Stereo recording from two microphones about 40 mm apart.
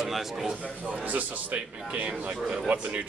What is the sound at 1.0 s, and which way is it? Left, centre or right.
A man's voice, right.